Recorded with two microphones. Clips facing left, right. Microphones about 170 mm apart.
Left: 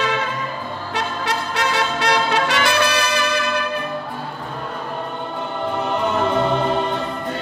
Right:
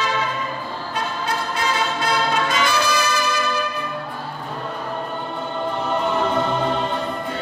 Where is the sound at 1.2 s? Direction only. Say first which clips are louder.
Left 1 dB; 75° left (ahead or behind).